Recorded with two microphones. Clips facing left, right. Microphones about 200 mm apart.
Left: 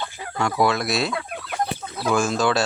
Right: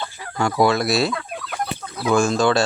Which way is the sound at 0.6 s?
Centre (ahead or behind).